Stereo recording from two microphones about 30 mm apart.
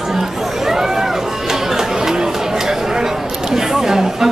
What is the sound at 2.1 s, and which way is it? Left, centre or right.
Chatter, centre.